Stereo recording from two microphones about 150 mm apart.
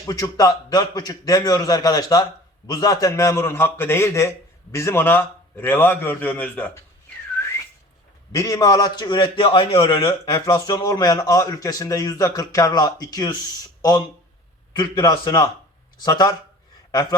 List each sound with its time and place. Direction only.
0.1 s a man's voice: 25° left (ahead or behind)
8.3 s a man's voice: 25° left (ahead or behind)
14.7 s a man's voice: 30° left (ahead or behind)